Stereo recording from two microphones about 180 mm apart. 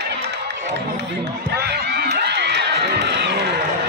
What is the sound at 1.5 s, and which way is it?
Music, 65° right (ahead or behind).